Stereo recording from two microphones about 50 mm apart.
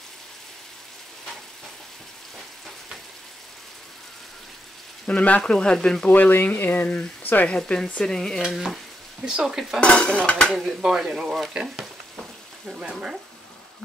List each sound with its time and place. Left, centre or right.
5.0 s speech: left
6.0 s speech: left
7.4 s cutlery: left
8.0 s speech: centre
8.4 s stir: centre
9.2 s speech: centre
9.8 s cutlery: left
10.5 s speech: centre